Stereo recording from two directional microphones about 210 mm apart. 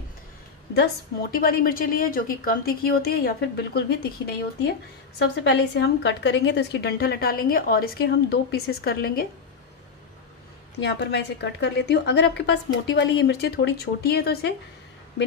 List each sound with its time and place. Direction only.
1.3 s a woman's voice: 45° left (ahead or behind)
5.2 s a woman's voice: 55° left (ahead or behind)
10.8 s a woman's voice: 55° left (ahead or behind)